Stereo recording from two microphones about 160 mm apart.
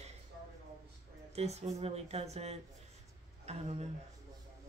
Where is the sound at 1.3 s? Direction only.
45° right (ahead or behind).